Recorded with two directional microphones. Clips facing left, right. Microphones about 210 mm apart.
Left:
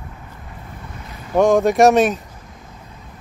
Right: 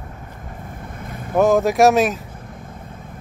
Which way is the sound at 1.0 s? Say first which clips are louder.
Right 4 dB; 50° right (ahead or behind).